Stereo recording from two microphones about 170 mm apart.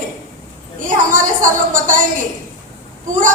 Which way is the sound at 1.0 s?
50° right (ahead or behind).